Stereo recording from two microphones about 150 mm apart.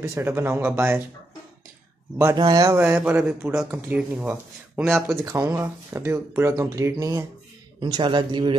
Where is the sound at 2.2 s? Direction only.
25° right (ahead or behind).